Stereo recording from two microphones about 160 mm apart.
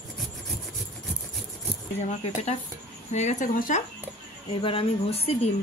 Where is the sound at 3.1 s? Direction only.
45° left (ahead or behind).